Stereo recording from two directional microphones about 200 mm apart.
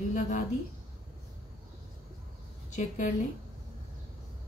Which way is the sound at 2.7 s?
40° left (ahead or behind).